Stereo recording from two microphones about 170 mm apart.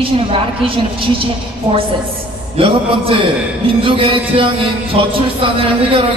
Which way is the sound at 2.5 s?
35° right (ahead or behind).